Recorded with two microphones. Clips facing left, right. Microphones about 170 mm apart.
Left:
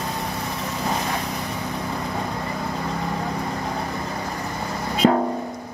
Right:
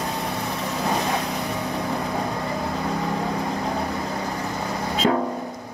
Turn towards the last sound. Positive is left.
turn(degrees=40)  # may be behind; listen again after turning